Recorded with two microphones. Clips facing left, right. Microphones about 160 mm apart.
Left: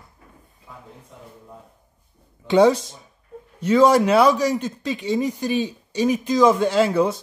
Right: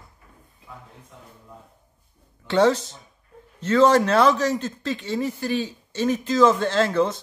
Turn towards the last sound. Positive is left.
turn(degrees=10)  # may be behind; listen again after turning